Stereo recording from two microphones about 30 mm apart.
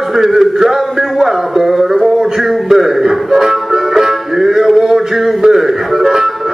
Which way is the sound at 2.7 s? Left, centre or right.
Centre.